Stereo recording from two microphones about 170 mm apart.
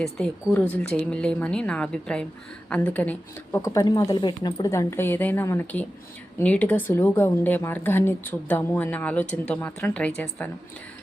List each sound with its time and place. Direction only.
0.0 s a woman's voice: 5° left (ahead or behind)
3.6 s a woman's voice: 20° left (ahead or behind)